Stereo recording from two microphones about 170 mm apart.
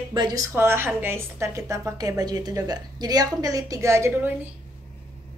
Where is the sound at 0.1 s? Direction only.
25° right (ahead or behind).